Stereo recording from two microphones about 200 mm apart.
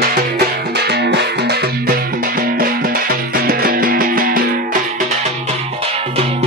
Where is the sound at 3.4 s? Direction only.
45° right (ahead or behind).